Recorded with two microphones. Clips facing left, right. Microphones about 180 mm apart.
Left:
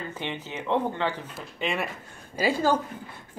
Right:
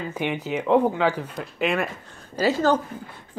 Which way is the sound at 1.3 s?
Centre (ahead or behind).